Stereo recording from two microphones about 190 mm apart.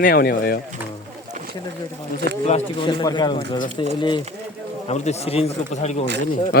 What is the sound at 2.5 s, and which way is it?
Speech, 30° left (ahead or behind).